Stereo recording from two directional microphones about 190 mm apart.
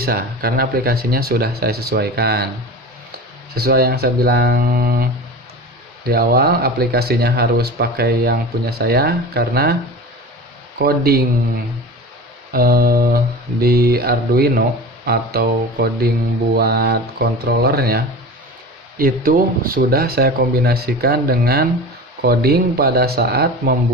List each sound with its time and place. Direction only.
0.0 s speech: 50° right (ahead or behind)
3.5 s speech: 55° right (ahead or behind)
6.1 s speech: 55° right (ahead or behind)
10.8 s speech: 55° right (ahead or behind)
12.5 s speech: 50° right (ahead or behind)